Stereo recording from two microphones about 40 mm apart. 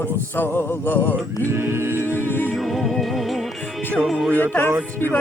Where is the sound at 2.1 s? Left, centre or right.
Left.